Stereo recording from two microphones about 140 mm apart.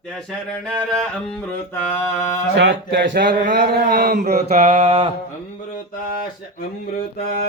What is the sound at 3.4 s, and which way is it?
Mantra, 70° right (ahead or behind).